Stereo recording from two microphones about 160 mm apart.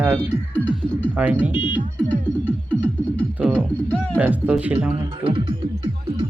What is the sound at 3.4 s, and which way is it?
Music, 10° right (ahead or behind).